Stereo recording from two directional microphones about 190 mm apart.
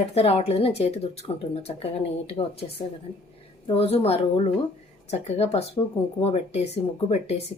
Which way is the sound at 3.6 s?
30° left (ahead or behind).